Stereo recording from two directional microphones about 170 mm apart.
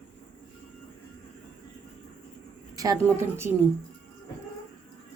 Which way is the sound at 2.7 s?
20° right (ahead or behind).